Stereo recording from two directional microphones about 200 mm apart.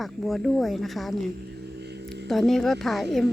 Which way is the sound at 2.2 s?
Centre (ahead or behind).